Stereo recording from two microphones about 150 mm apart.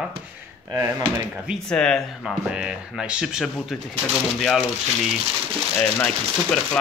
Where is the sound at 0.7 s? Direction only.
25° right (ahead or behind).